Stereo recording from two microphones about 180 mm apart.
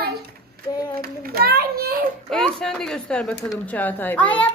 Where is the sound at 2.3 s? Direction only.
5° left (ahead or behind).